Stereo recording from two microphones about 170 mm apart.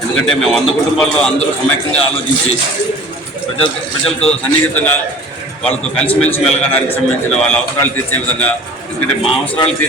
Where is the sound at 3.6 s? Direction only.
35° left (ahead or behind).